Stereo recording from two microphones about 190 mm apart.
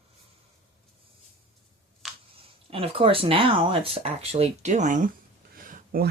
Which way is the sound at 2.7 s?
30° right (ahead or behind).